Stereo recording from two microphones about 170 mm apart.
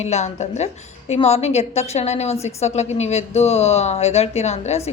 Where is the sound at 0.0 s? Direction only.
40° left (ahead or behind).